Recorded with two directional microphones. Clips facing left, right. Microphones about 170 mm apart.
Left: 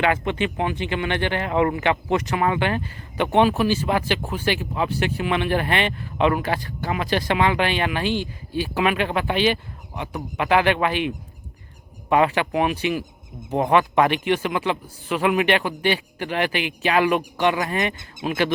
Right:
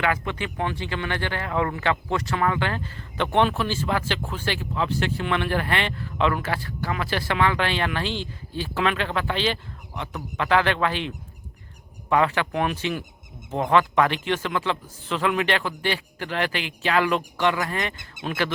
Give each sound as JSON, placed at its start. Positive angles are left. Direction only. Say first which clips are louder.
{"t": 0.0, "sound": "speech", "louder": "left 4 dB", "side_deg": 20}